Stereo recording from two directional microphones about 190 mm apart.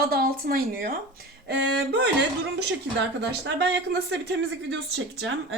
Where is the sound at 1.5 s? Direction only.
60° right (ahead or behind).